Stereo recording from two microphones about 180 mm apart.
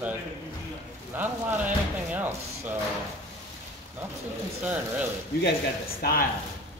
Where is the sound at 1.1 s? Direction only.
10° right (ahead or behind).